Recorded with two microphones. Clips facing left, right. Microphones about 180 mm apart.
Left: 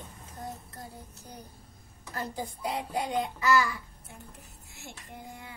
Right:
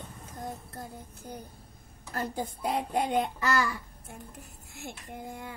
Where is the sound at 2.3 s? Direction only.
55° right (ahead or behind).